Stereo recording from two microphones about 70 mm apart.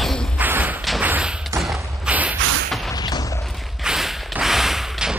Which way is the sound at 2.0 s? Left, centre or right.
Centre.